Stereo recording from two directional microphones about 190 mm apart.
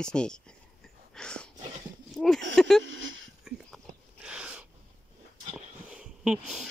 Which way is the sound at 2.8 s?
75° right (ahead or behind).